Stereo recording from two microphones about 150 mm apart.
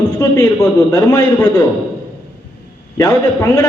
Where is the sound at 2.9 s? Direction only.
20° left (ahead or behind).